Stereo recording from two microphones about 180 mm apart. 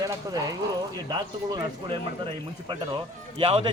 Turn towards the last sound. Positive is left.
turn(degrees=-30)  # may be behind; listen again after turning